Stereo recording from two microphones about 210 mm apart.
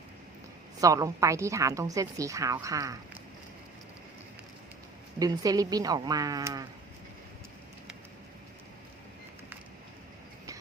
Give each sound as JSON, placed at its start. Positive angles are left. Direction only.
{"t": 0.8, "sound": "a woman's voice", "side_deg": -15}
{"t": 5.2, "sound": "a woman's voice", "side_deg": -15}